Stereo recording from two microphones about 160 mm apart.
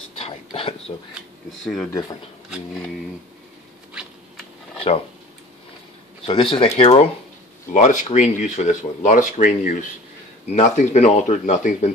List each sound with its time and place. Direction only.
0.2 s whispering: 35° left (ahead or behind)
1.6 s speech: centre (ahead or behind)
6.2 s speech: 35° left (ahead or behind)